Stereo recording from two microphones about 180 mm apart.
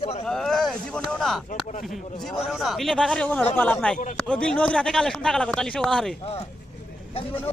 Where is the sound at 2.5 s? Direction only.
Centre (ahead or behind).